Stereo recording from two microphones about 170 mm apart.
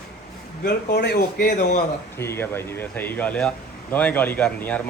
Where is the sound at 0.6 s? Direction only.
80° left.